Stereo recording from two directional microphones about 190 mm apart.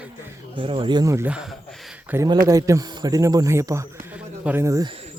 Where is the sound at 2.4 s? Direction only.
20° right (ahead or behind).